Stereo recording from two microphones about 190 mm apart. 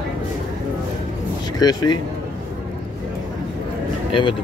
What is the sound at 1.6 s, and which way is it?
Speech, 20° left (ahead or behind).